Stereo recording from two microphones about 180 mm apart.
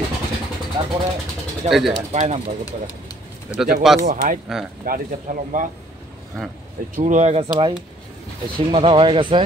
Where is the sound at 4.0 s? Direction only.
50° right (ahead or behind).